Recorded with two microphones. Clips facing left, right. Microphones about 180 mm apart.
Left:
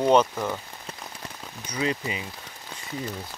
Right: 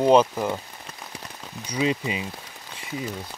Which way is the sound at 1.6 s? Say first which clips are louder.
Right 3 dB; 15° right (ahead or behind).